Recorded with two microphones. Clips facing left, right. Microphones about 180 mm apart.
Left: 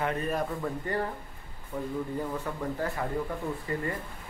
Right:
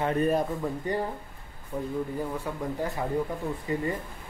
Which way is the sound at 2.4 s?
15° right (ahead or behind).